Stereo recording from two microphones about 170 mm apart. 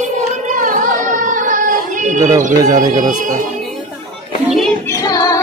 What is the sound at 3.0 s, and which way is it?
Speech, 50° right (ahead or behind).